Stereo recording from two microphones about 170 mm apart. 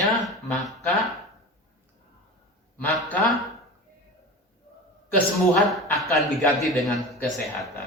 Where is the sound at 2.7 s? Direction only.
10° left (ahead or behind).